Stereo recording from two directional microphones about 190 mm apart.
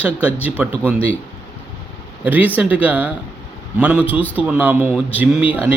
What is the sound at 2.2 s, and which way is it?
Speech, 10° right (ahead or behind).